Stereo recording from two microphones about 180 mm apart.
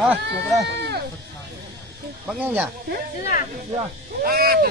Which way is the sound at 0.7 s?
65° right (ahead or behind).